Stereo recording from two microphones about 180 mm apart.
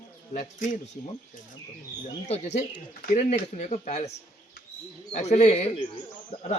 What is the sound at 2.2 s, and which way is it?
Speech, 35° left (ahead or behind).